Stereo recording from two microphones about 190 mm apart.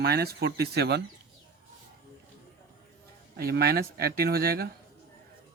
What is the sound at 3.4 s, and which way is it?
Speech, 55° right (ahead or behind).